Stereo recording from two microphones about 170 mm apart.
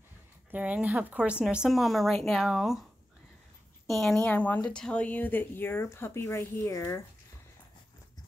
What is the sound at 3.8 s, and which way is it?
Speech, centre (ahead or behind).